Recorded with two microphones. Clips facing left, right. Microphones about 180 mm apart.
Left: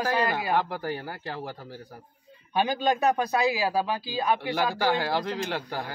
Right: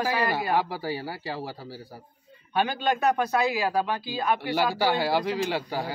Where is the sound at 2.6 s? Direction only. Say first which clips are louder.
Left 1 dB; 15° left (ahead or behind).